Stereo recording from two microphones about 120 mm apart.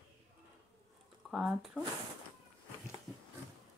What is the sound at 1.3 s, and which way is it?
Speech, 5° right (ahead or behind).